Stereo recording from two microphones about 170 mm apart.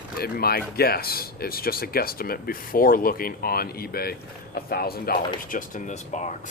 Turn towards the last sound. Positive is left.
turn(degrees=45)  # may be behind; listen again after turning